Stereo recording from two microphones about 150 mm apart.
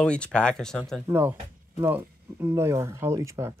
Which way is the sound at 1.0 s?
15° right (ahead or behind).